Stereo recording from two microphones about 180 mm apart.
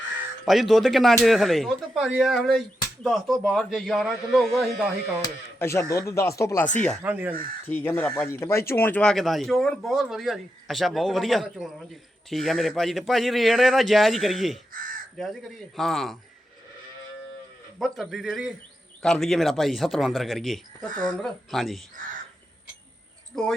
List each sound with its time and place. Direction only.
0.4 s speech: centre (ahead or behind)
5.2 s speech: 15° left (ahead or behind)
7.0 s speech: 10° right (ahead or behind)
7.7 s speech: 10° left (ahead or behind)
14.7 s crow: 50° right (ahead or behind)
15.2 s speech: centre (ahead or behind)
17.7 s speech: centre (ahead or behind)
22.0 s speech: 50° right (ahead or behind)
23.3 s speech: 5° left (ahead or behind)